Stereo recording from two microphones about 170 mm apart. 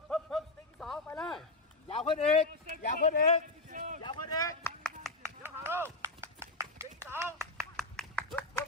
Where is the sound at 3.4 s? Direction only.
50° right (ahead or behind).